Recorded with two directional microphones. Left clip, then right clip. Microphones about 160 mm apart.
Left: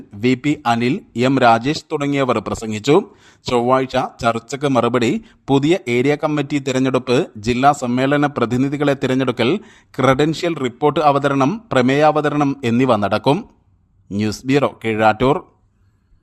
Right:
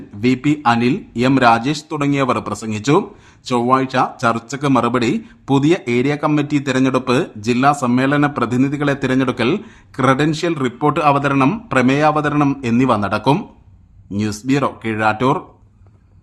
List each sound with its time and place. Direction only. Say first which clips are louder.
0.2 s speech: right 1 dB; 45° left (ahead or behind)